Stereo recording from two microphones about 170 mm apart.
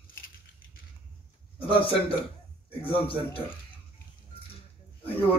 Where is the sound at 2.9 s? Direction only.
30° left (ahead or behind).